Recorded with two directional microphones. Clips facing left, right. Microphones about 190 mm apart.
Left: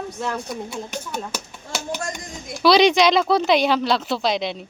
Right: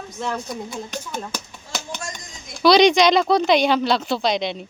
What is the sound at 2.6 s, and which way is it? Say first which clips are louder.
Speech: right 1 dB; 5° left (ahead or behind).